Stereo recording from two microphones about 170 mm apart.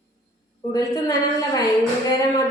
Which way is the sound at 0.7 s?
20° left (ahead or behind).